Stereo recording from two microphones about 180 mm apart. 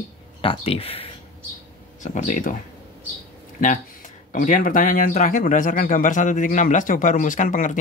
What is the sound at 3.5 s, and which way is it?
Speech, 45° left (ahead or behind).